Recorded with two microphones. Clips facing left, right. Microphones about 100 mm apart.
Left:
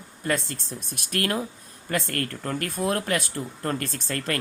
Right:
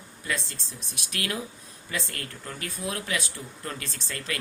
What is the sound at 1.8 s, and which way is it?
Speech, 55° left (ahead or behind).